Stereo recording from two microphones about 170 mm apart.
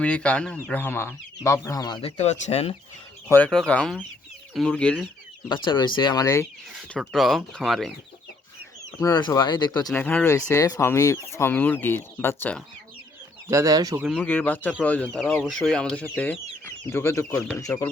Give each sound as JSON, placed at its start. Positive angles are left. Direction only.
{"t": 0.0, "sound": "speech", "side_deg": 5}
{"t": 3.3, "sound": "speech", "side_deg": 5}
{"t": 5.5, "sound": "speech", "side_deg": 25}
{"t": 7.0, "sound": "speech", "side_deg": 0}
{"t": 9.0, "sound": "speech", "side_deg": 25}
{"t": 9.9, "sound": "speech", "side_deg": 10}
{"t": 13.5, "sound": "speech", "side_deg": -20}
{"t": 14.2, "sound": "speech", "side_deg": 10}